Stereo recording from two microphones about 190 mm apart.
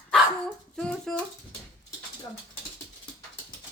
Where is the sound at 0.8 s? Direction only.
5° left (ahead or behind).